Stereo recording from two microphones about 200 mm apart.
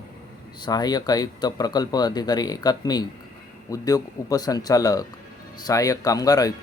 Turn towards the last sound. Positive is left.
turn(degrees=20)  # may be behind; listen again after turning